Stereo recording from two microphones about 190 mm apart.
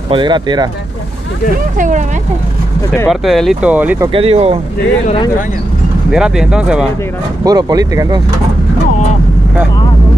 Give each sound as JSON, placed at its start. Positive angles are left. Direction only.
{"t": 0.1, "sound": "speech", "side_deg": -25}
{"t": 1.8, "sound": "speech", "side_deg": -40}
{"t": 3.1, "sound": "speech", "side_deg": 0}
{"t": 4.1, "sound": "speech", "side_deg": -30}
{"t": 6.1, "sound": "speech", "side_deg": -5}
{"t": 7.4, "sound": "speech", "side_deg": -20}